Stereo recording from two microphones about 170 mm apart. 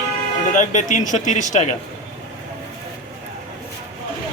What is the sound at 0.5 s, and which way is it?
Speech, 50° left (ahead or behind).